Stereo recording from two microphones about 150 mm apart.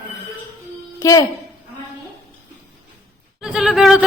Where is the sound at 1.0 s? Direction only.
25° left (ahead or behind).